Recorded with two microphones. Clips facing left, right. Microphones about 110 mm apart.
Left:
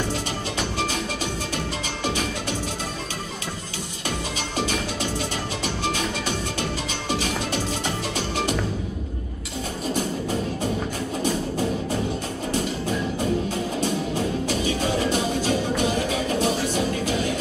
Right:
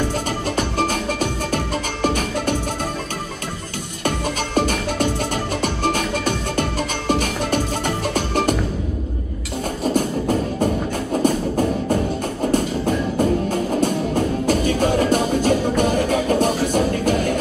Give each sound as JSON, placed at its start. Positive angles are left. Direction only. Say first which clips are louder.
{"t": 0.6, "sound": "music", "louder": "right 5 dB", "side_deg": -50}
{"t": 4.6, "sound": "music", "louder": "right 6 dB", "side_deg": -50}
{"t": 9.9, "sound": "music", "louder": "right 6 dB", "side_deg": -50}